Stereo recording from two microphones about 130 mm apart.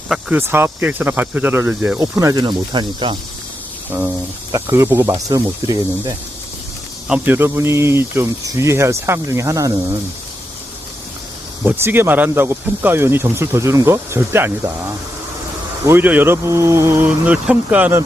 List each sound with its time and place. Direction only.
0.1 s speech: 10° right (ahead or behind); by 3.2 s 35° right (ahead or behind)
3.8 s a sound: 15° right (ahead or behind)
4.5 s speech: 20° right (ahead or behind)
7.1 s speech: 15° right (ahead or behind)
11.6 s speech: 15° right (ahead or behind)